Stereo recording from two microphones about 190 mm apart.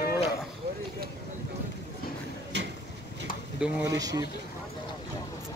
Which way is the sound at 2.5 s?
65° right (ahead or behind).